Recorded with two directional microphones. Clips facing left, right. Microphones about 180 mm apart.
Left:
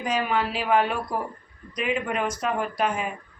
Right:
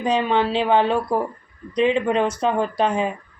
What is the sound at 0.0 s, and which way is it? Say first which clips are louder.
Speech: right 6 dB; 30° right (ahead or behind).